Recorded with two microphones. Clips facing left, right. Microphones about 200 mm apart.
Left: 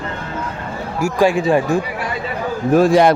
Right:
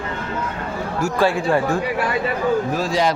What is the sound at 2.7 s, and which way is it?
Speech, 55° left (ahead or behind).